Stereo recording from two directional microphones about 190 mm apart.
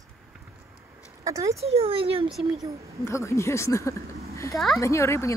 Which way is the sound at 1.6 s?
30° right (ahead or behind).